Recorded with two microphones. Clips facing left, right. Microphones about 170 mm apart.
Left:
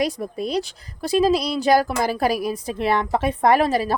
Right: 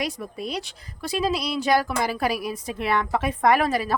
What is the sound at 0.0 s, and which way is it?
A woman's voice, 35° left (ahead or behind).